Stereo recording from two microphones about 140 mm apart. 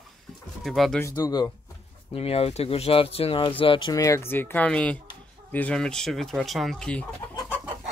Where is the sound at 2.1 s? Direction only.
45° left (ahead or behind).